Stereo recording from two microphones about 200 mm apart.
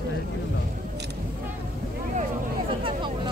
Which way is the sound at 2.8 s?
25° right (ahead or behind).